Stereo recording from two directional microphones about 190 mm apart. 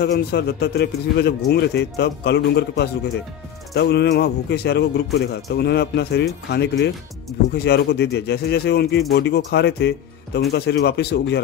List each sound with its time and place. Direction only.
0.0 s speech: 60° left (ahead or behind)